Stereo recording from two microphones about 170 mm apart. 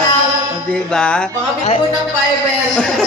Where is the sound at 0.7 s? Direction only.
5° left (ahead or behind).